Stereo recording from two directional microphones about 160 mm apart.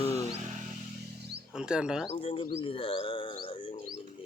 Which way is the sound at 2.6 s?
35° left (ahead or behind).